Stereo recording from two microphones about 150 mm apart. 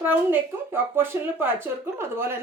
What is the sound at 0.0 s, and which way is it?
Speech, 10° right (ahead or behind).